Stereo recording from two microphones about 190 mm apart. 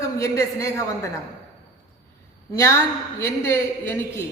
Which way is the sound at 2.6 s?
15° left (ahead or behind).